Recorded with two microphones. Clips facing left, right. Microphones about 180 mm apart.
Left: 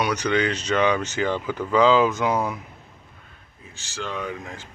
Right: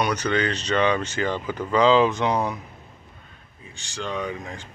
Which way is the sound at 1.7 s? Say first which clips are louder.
Even; 5° left (ahead or behind).